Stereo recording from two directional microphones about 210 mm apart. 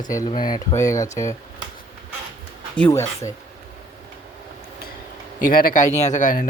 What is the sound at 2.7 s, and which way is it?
Speech, 10° left (ahead or behind).